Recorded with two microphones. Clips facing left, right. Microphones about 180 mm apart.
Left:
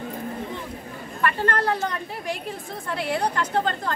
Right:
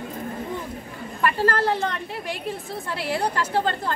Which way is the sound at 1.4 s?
30° right (ahead or behind).